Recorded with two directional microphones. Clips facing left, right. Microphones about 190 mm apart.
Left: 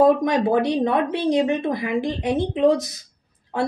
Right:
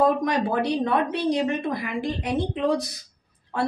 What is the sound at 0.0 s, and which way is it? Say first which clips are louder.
Speech: left 5 dB; 20° left (ahead or behind).